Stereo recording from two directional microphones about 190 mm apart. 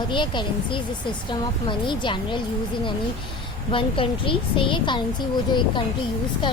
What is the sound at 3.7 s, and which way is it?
A woman's voice, 25° left (ahead or behind).